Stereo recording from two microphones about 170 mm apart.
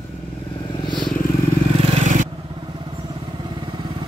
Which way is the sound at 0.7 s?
25° left (ahead or behind).